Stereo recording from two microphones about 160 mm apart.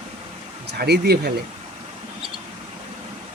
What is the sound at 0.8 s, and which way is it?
Speech, 90° right.